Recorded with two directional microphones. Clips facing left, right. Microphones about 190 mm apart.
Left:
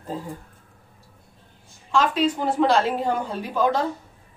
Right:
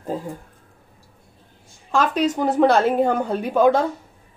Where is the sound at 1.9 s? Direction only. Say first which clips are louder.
Right 1 dB; 40° right (ahead or behind).